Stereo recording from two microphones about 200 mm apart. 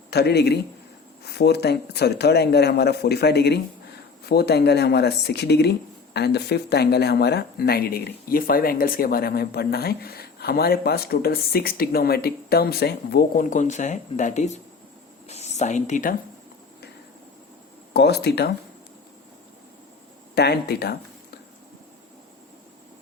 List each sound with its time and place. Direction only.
0.1 s speech: 55° left (ahead or behind); by 16.1 s 40° left (ahead or behind)
17.9 s speech: 55° left (ahead or behind)
20.3 s speech: 55° left (ahead or behind)